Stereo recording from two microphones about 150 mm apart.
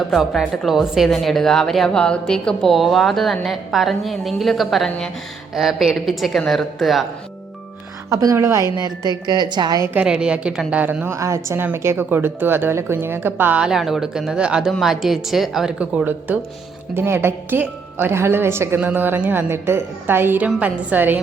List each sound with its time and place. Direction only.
0.1 s a woman's voice: centre (ahead or behind)
8.1 s a woman's voice: 20° right (ahead or behind)
9.9 s a woman's voice: 5° right (ahead or behind)